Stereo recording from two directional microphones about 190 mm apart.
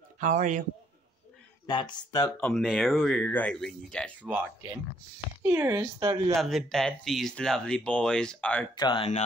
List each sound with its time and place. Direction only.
0.2 s a man's voice: 40° right (ahead or behind)
1.7 s speech: 25° left (ahead or behind)
2.4 s speech: centre (ahead or behind)
4.2 s speech: 10° right (ahead or behind)
6.3 s speech: centre (ahead or behind)
8.7 s speech: 25° left (ahead or behind)